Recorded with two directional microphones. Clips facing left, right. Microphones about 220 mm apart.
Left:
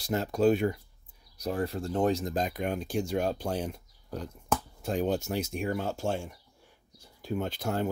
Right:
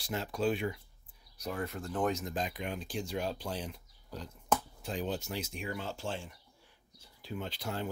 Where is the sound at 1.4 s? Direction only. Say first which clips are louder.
Left 6 dB; 30° left (ahead or behind).